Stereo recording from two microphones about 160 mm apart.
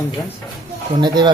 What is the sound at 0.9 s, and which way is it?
Speech, 30° right (ahead or behind).